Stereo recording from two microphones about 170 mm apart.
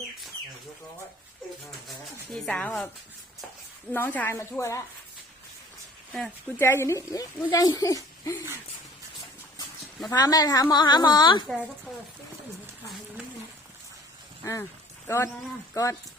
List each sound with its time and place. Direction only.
2.3 s a woman's voice: 5° left (ahead or behind)
3.9 s a woman's voice: 10° left (ahead or behind)
6.6 s a woman's voice: 15° left (ahead or behind)
9.6 s speech: 20° left (ahead or behind)
15.0 s a woman's voice: 15° left (ahead or behind)